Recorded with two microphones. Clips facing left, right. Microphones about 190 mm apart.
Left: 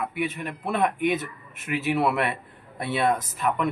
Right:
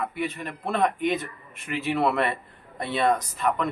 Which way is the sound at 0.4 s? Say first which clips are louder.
Right 1 dB; 10° left (ahead or behind).